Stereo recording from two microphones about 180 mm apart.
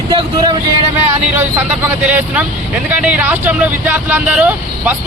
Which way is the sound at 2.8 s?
10° right (ahead or behind).